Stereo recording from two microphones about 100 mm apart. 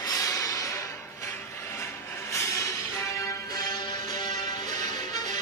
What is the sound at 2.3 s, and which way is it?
Music, 30° left (ahead or behind).